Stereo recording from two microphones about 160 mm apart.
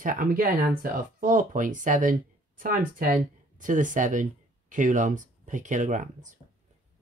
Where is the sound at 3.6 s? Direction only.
55° right (ahead or behind).